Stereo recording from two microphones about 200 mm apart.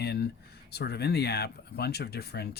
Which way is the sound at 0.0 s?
55° left (ahead or behind).